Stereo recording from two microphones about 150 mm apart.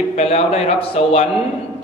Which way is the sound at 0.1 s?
45° left (ahead or behind).